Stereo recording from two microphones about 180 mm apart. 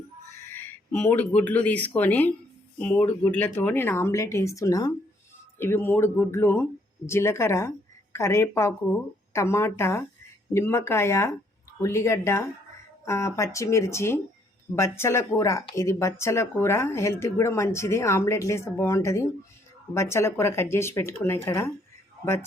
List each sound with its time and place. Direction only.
0.5 s speech: 10° left (ahead or behind)